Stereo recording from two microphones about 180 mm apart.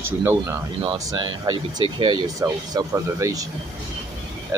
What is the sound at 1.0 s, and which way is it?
Speech, 25° right (ahead or behind).